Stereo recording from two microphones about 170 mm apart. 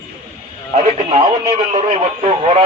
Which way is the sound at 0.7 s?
40° right (ahead or behind).